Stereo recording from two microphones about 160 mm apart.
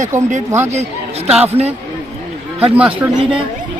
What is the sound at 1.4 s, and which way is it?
Speech, 40° right (ahead or behind).